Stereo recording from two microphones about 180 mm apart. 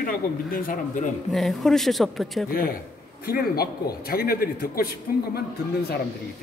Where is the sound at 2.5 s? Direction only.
55° left (ahead or behind).